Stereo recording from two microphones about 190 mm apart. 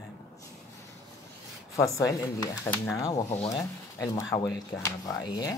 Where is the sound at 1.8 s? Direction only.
15° left (ahead or behind).